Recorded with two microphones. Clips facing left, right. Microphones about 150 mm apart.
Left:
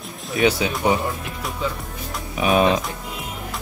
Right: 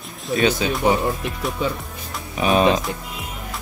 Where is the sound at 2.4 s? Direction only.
5° left (ahead or behind).